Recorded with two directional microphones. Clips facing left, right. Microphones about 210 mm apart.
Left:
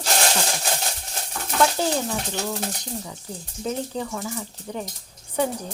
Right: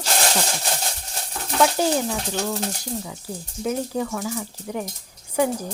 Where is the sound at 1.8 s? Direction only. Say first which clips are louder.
Right 3 dB; 15° right (ahead or behind).